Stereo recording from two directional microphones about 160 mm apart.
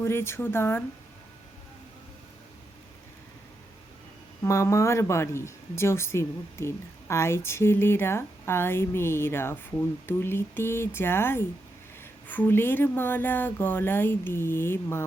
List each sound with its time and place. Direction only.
0.0 s speech: 15° left (ahead or behind)
4.4 s speech: 20° left (ahead or behind)